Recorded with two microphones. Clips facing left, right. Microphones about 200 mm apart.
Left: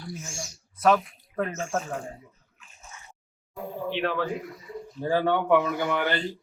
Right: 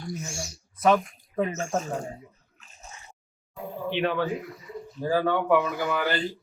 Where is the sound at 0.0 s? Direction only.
40° right (ahead or behind).